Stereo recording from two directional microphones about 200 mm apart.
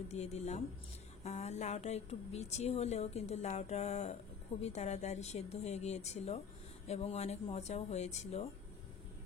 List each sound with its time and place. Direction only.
0.1 s speech: 35° left (ahead or behind)